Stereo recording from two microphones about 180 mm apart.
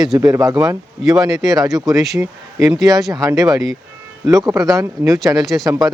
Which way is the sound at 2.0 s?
Centre (ahead or behind).